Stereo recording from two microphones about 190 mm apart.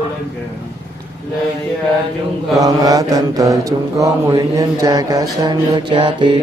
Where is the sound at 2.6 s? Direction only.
20° right (ahead or behind).